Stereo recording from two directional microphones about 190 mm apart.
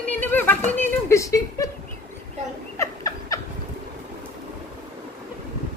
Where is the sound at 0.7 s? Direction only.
15° left (ahead or behind).